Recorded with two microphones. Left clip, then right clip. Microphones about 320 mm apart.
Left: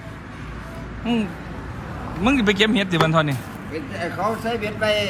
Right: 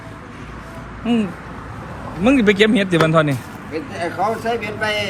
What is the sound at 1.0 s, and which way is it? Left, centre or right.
A man's voice, centre.